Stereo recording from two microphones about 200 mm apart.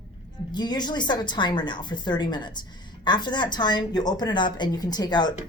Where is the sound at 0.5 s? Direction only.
20° left (ahead or behind).